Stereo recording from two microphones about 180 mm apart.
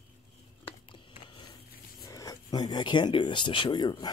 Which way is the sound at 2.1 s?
20° left (ahead or behind).